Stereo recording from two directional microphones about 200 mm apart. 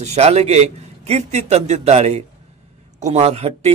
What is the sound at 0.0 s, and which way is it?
Speech, 35° right (ahead or behind).